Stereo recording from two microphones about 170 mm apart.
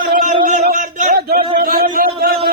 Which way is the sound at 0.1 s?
50° right (ahead or behind).